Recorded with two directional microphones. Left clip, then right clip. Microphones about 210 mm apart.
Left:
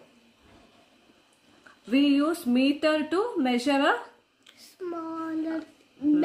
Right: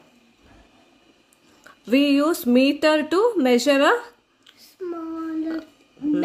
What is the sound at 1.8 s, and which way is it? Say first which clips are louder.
Speech: right 5 dB; 55° right (ahead or behind).